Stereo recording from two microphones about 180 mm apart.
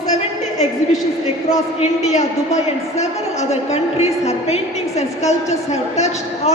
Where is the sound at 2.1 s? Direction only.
40° left (ahead or behind).